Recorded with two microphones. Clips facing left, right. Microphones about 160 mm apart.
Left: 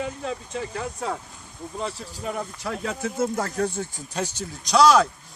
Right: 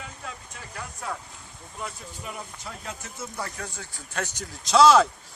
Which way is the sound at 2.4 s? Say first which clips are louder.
Left 9 dB; 75° left (ahead or behind).